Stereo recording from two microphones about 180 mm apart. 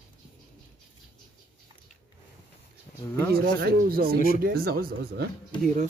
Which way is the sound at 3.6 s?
55° right (ahead or behind).